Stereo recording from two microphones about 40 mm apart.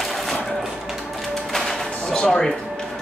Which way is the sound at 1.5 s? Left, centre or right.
Centre.